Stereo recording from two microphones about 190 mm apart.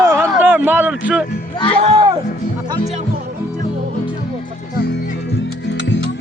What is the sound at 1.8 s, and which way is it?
Music, 30° right (ahead or behind).